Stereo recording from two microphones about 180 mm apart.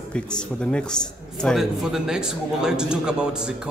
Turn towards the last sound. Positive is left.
turn(degrees=-5)  # may be behind; listen again after turning